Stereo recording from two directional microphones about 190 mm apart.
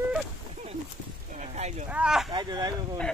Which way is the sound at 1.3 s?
35° right (ahead or behind).